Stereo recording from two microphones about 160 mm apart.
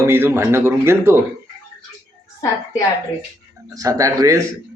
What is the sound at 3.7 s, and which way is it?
Speech, 20° right (ahead or behind).